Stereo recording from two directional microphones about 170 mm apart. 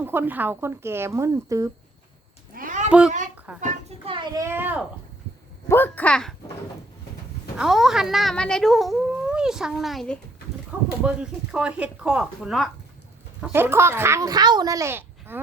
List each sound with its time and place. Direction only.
0.0 s a child's voice: 10° right (ahead or behind)
2.6 s a sound: 50° right (ahead or behind)
3.6 s a sound: 35° right (ahead or behind)
4.4 s a child's voice: 15° right (ahead or behind)
5.6 s speech: 10° left (ahead or behind)
7.5 s speech: 5° right (ahead or behind)
13.4 s a child's voice: 15° right (ahead or behind)